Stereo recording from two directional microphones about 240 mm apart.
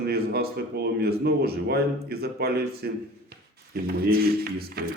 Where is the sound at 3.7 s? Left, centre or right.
Right.